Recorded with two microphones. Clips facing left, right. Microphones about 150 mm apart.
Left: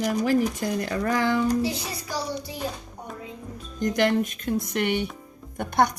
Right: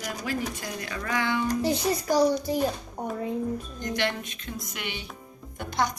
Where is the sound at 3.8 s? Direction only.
45° left (ahead or behind).